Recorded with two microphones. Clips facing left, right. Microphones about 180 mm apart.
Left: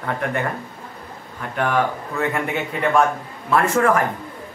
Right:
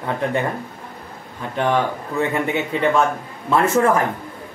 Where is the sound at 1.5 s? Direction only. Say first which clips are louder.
Right 1 dB; 25° right (ahead or behind).